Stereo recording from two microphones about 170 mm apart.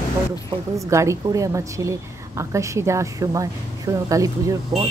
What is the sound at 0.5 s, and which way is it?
A woman's voice, 20° right (ahead or behind).